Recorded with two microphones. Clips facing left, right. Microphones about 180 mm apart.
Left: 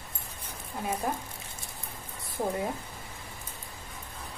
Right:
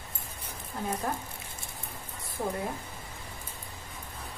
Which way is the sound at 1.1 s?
15° left (ahead or behind).